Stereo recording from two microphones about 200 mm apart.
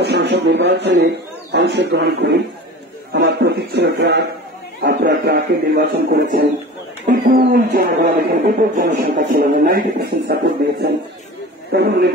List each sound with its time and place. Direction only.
0.0 s a man's voice: 55° right (ahead or behind)
11.7 s speech: 55° right (ahead or behind)